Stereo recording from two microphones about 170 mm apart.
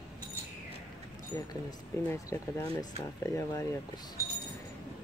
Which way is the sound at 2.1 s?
20° left (ahead or behind).